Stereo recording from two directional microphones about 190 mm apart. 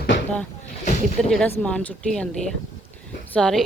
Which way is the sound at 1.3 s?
5° left (ahead or behind).